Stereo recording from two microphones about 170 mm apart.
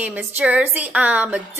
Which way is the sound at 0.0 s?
10° right (ahead or behind).